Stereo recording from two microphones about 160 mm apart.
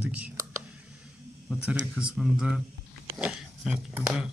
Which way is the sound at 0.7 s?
5° right (ahead or behind).